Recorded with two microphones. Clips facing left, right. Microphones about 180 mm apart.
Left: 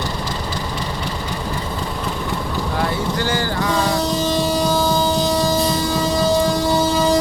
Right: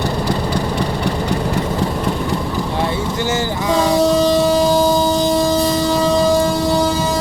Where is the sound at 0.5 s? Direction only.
60° right (ahead or behind).